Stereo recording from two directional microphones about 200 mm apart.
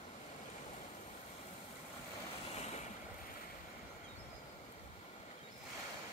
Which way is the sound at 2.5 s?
35° left (ahead or behind).